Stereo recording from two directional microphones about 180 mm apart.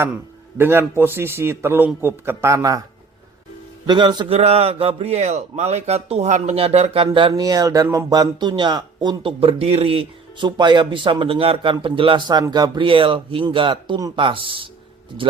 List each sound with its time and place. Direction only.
0.5 s a man's voice: 15° right (ahead or behind)
3.8 s a man's voice: 25° right (ahead or behind)